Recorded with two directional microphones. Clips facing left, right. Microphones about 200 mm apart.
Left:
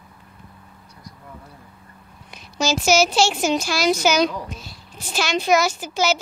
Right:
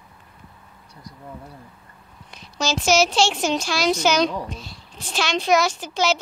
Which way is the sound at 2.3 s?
5° left (ahead or behind).